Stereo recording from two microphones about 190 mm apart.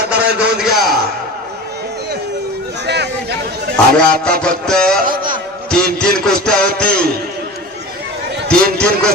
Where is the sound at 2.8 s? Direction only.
60° right (ahead or behind).